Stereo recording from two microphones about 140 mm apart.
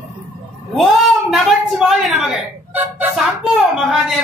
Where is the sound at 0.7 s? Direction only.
Centre (ahead or behind).